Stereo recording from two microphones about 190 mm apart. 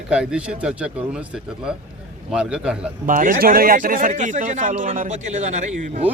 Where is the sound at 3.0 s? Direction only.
45° right (ahead or behind).